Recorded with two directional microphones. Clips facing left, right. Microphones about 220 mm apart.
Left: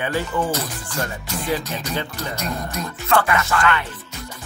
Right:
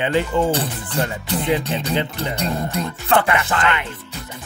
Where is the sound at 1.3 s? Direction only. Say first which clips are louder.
Right 6 dB; 30° right (ahead or behind).